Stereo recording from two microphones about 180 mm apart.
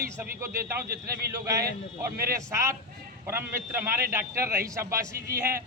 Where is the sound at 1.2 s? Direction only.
15° right (ahead or behind).